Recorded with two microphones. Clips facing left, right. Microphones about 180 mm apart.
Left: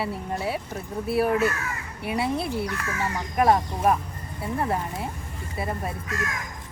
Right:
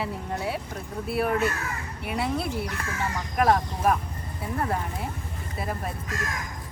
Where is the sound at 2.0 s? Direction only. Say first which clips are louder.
Left 2 dB; centre (ahead or behind).